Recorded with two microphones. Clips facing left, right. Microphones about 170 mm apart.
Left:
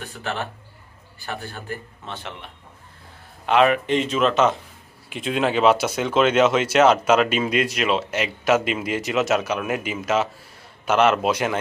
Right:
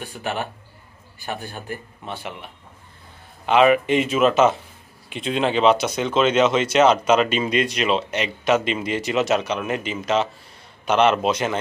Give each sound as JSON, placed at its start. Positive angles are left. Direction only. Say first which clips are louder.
{"t": 0.0, "sound": "a man's voice", "louder": "right 2 dB", "side_deg": -15}